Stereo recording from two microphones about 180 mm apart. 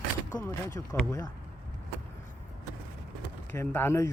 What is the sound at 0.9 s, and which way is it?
Speech, 15° left (ahead or behind).